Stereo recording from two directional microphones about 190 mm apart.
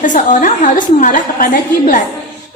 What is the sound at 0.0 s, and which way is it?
A woman's voice, 45° left (ahead or behind).